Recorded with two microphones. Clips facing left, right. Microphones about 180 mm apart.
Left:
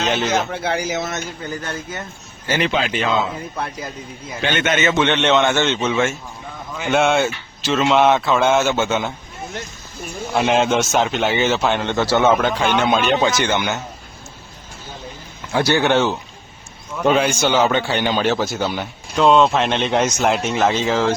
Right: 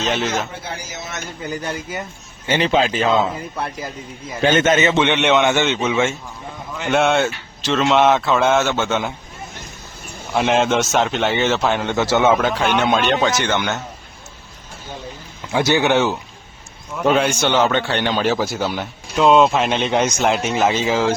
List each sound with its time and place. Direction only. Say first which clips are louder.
0.0 s a man's voice: left 2 dB; centre (ahead or behind)
0.5 s speech: left 9 dB; 70° left (ahead or behind)
1.5 s speech: right 2 dB; 15° right (ahead or behind)
2.5 s a man's voice: right 3 dB; 35° right (ahead or behind)
3.5 s a man's voice: right 1 dB; centre (ahead or behind)
4.4 s a man's voice: right 5 dB; 40° right (ahead or behind)
4.9 s a man's voice: right 1 dB; 20° right (ahead or behind)
5.1 s speech: even; 10° right (ahead or behind)
5.6 s a man's voice: even; centre (ahead or behind)
10.3 s a man's voice: even; centre (ahead or behind)
12.3 s a man's voice: even; centre (ahead or behind)
13.4 s speech: left 1 dB; 10° left (ahead or behind)
15.5 s speech: even; 15° right (ahead or behind)
16.9 s a man's voice: even; centre (ahead or behind)